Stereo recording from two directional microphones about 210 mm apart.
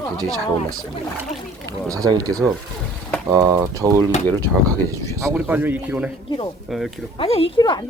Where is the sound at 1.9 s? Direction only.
15° right (ahead or behind).